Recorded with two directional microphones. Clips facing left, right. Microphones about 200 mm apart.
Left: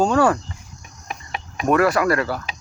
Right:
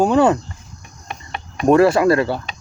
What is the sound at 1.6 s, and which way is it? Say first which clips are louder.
Speech: right 5 dB; 30° right (ahead or behind).